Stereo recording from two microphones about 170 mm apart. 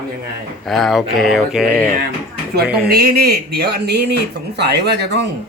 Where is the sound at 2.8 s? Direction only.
65° right (ahead or behind).